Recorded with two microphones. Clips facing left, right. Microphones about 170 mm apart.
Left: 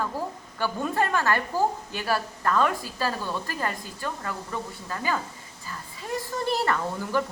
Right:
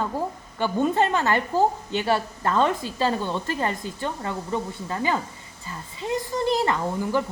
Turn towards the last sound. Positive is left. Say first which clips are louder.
# right 3 dB
turn(degrees=-15)  # may be behind; listen again after turning